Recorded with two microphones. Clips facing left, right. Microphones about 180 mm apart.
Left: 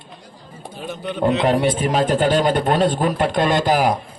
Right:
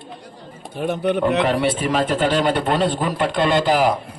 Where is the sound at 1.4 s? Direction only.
45° left (ahead or behind).